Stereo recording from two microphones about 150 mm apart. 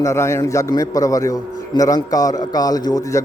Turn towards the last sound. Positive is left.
turn(degrees=20)  # may be behind; listen again after turning